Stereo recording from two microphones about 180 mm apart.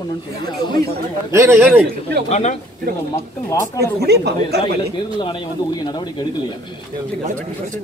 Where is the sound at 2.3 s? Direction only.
40° left (ahead or behind).